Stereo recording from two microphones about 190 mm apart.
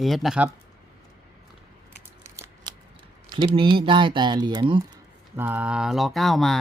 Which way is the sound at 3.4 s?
25° right (ahead or behind).